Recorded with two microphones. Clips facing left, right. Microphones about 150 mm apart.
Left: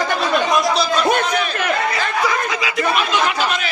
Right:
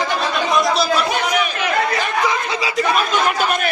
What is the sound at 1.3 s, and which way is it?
Speech, 15° right (ahead or behind).